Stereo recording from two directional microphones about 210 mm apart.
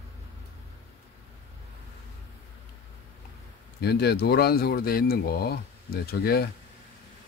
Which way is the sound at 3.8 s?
50° left (ahead or behind).